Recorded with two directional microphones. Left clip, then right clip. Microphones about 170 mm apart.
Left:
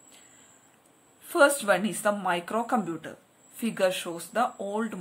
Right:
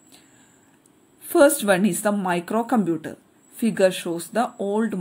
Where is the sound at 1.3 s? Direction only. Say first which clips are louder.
Right 5 dB; 25° right (ahead or behind).